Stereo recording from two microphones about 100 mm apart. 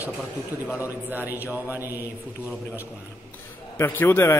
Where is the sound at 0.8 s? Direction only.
20° right (ahead or behind).